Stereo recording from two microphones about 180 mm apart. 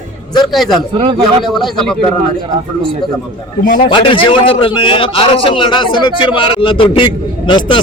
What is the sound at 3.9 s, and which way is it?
A man's voice, 30° left (ahead or behind).